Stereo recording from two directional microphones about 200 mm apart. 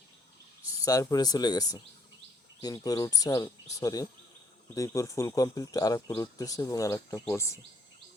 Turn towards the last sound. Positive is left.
turn(degrees=15)  # may be behind; listen again after turning